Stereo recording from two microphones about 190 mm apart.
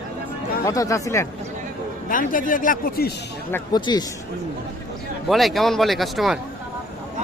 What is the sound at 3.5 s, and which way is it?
Speech, 20° left (ahead or behind).